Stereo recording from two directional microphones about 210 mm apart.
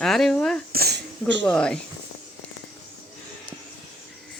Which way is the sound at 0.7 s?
50° right (ahead or behind).